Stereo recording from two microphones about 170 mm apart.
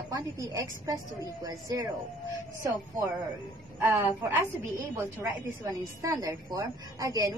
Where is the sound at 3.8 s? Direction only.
15° right (ahead or behind).